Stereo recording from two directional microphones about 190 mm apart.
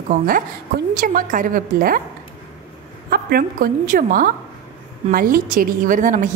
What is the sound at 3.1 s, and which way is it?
A woman's voice, 50° right (ahead or behind).